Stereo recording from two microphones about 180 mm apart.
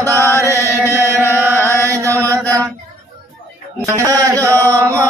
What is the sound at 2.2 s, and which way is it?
Music, 20° right (ahead or behind).